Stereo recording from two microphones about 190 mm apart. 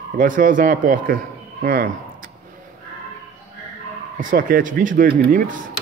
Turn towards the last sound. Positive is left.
turn(degrees=-45)  # may be behind; listen again after turning